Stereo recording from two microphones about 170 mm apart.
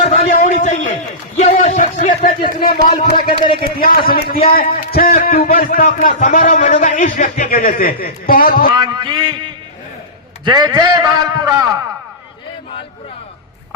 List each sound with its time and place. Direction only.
0.0 s a sound: 45° left (ahead or behind)
3.8 s a man's voice: 60° left (ahead or behind)
8.7 s a man's voice: 25° right (ahead or behind)
10.4 s a man's voice: 25° right (ahead or behind)